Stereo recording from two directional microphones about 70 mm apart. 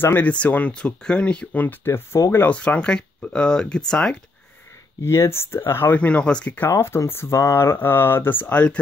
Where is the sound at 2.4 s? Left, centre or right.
Left.